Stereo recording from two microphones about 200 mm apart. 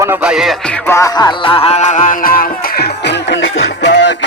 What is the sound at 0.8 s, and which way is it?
Music, 15° left (ahead or behind).